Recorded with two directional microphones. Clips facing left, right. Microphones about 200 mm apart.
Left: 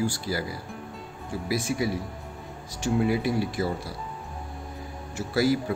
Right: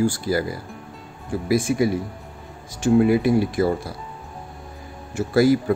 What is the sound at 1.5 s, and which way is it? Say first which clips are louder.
Speech: right 7 dB; 50° right (ahead or behind).